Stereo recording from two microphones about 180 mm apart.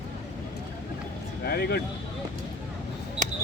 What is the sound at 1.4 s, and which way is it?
Speech, 60° left (ahead or behind).